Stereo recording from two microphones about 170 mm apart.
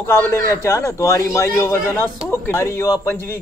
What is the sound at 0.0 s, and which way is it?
Speech, 15° left (ahead or behind).